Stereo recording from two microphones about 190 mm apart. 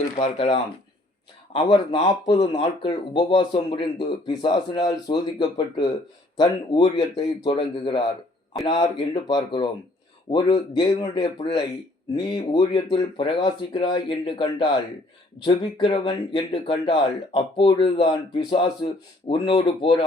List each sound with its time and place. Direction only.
0.2 s speech: 30° left (ahead or behind)